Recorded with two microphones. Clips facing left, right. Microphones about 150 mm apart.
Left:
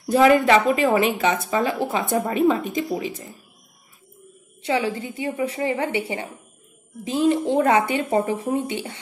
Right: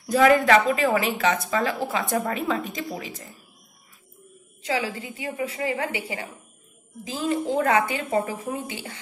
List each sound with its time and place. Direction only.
0.0 s speech: 25° left (ahead or behind)
4.6 s speech: 25° left (ahead or behind)